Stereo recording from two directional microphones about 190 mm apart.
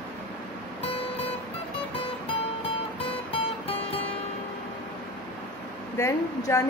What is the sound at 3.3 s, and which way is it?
Music, 30° left (ahead or behind).